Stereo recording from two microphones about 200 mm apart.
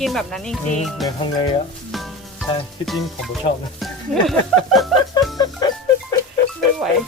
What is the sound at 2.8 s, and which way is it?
Speech, centre (ahead or behind).